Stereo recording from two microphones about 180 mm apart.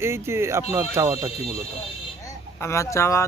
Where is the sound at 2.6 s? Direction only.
15° left (ahead or behind).